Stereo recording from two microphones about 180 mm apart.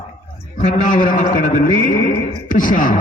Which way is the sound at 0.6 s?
45° left (ahead or behind).